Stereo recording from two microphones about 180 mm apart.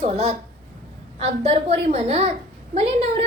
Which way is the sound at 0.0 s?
35° right (ahead or behind).